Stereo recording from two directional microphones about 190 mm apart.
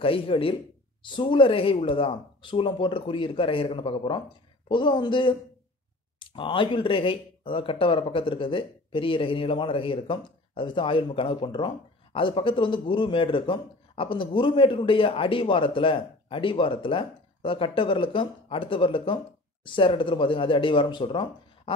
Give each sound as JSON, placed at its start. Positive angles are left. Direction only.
{"t": 0.0, "sound": "speech", "side_deg": 30}